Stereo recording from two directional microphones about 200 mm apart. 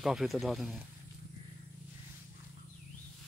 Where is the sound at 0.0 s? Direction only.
Centre (ahead or behind).